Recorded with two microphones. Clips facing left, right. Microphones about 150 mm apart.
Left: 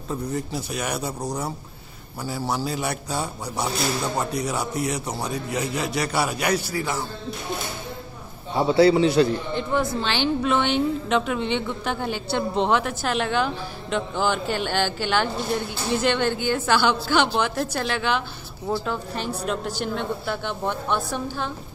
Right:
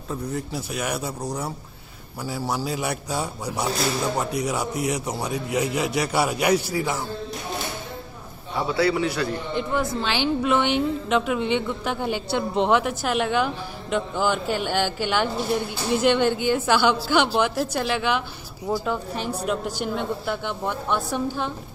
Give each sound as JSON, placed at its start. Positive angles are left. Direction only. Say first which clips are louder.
{"t": 0.5, "sound": "speech", "louder": "even", "side_deg": -5}
{"t": 2.5, "sound": "a woman's voice", "louder": "even", "side_deg": -10}
{"t": 8.5, "sound": "a man's voice", "louder": "left 5 dB", "side_deg": 30}
{"t": 9.6, "sound": "a woman's voice", "louder": "right 1 dB", "side_deg": -10}